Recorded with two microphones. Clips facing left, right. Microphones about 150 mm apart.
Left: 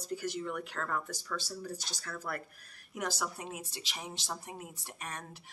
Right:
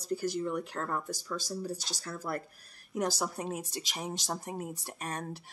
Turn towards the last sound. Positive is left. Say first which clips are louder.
# right 6 dB
turn(degrees=-35)  # may be behind; listen again after turning